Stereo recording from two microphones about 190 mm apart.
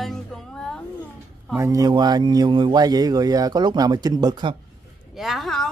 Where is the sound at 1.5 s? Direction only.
15° right (ahead or behind).